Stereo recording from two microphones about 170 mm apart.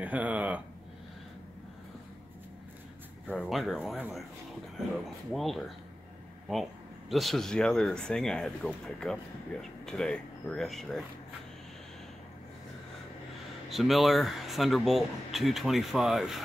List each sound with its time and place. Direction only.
0.0 s speech: 10° right (ahead or behind)
3.3 s a man's voice: centre (ahead or behind)
5.3 s a man's voice: centre (ahead or behind)
13.7 s a man's voice: centre (ahead or behind)